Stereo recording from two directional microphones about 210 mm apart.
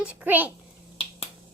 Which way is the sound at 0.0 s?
5° right (ahead or behind).